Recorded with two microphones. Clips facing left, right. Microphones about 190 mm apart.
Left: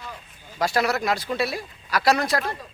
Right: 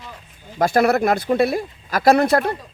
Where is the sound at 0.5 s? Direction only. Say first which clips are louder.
Right 7 dB; 50° right (ahead or behind).